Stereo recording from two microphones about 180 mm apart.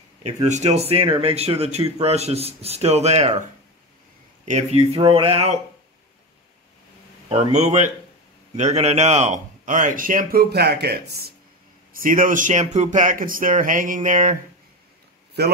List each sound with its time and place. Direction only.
0.2 s speech: 40° right (ahead or behind)
4.5 s speech: 35° right (ahead or behind)
7.2 s a man's voice: 35° right (ahead or behind); by 11.3 s 60° right (ahead or behind)
11.9 s a man's voice: 50° right (ahead or behind)
15.4 s a man's voice: 65° right (ahead or behind)